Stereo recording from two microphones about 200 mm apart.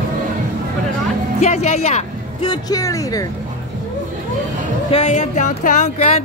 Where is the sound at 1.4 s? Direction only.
35° left (ahead or behind); by 3.3 s 15° left (ahead or behind).